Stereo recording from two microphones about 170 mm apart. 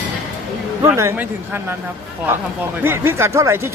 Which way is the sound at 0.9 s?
15° right (ahead or behind).